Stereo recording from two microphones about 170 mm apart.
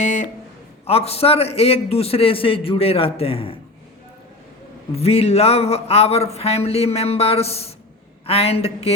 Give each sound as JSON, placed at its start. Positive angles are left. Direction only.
{"t": 0.0, "sound": "a sound", "side_deg": 45}
{"t": 0.9, "sound": "a man's voice", "side_deg": 35}
{"t": 4.9, "sound": "a man's voice", "side_deg": 35}